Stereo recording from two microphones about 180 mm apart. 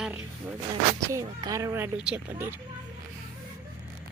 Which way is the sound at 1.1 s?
20° right (ahead or behind).